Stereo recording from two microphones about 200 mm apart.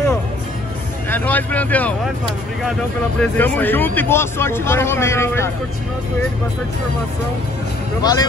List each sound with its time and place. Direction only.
1.1 s speech: 10° left (ahead or behind)
3.2 s speech: 10° left (ahead or behind)
8.0 s speech: 20° left (ahead or behind)